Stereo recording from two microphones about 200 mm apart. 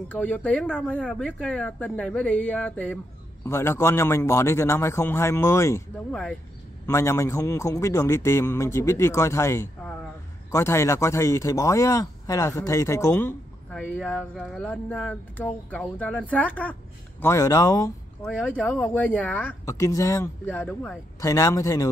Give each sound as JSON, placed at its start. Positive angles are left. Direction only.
{"t": 0.1, "sound": "speech", "side_deg": 5}
{"t": 6.9, "sound": "speech", "side_deg": 15}
{"t": 18.2, "sound": "speech", "side_deg": 5}
{"t": 21.2, "sound": "speech", "side_deg": 15}